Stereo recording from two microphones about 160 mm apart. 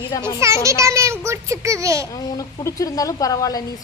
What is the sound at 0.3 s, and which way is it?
A child's voice, 20° right (ahead or behind).